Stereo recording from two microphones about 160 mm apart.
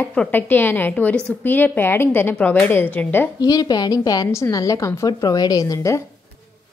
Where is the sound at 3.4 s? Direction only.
25° left (ahead or behind).